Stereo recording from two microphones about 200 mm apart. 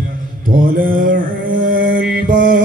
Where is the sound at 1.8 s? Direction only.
60° right (ahead or behind); by 2.4 s 45° right (ahead or behind).